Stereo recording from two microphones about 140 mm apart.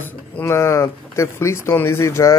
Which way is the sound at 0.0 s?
15° left (ahead or behind).